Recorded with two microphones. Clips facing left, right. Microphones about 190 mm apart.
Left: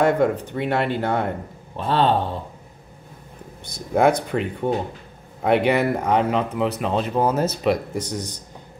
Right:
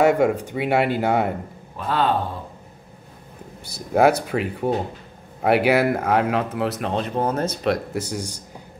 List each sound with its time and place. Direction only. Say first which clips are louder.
0.0 s speech: right 1 dB; 10° right (ahead or behind)
1.8 s a man's voice: left 2 dB; 30° left (ahead or behind)
3.6 s speech: right 1 dB; 5° right (ahead or behind)